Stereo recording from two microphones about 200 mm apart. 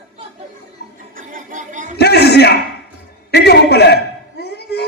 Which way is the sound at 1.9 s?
55° left (ahead or behind).